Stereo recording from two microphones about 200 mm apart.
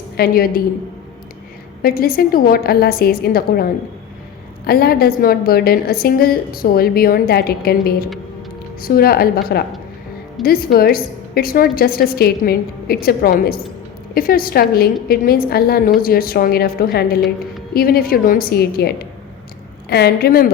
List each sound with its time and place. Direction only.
0.2 s a woman's voice: 50° left (ahead or behind)
1.8 s a woman's voice: 45° left (ahead or behind)